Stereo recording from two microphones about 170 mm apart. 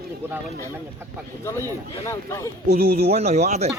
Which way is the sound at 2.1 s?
15° left (ahead or behind).